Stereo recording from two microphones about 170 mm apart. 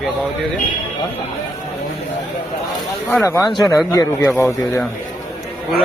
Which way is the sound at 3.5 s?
20° left (ahead or behind).